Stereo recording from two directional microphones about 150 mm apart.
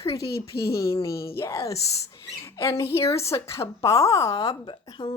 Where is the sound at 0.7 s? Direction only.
20° left (ahead or behind).